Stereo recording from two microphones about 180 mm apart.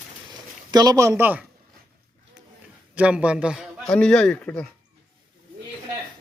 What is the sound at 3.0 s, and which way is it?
A man's voice, 5° right (ahead or behind).